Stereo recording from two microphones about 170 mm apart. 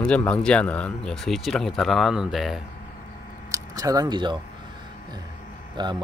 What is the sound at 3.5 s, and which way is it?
Speech, 20° right (ahead or behind).